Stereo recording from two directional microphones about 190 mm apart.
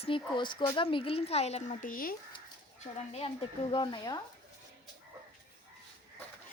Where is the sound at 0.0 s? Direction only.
25° left (ahead or behind); by 2.1 s 45° left (ahead or behind).